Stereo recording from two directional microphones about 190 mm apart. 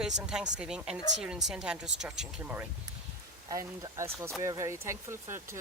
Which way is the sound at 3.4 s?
20° right (ahead or behind).